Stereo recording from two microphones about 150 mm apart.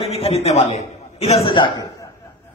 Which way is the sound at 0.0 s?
45° left (ahead or behind).